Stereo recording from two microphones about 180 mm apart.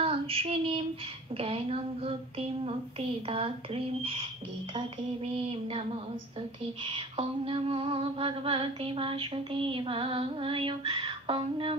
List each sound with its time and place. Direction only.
0.0 s child singing: 30° right (ahead or behind)
1.3 s music: 30° right (ahead or behind)